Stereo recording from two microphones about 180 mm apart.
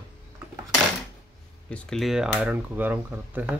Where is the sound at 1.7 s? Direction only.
Centre (ahead or behind).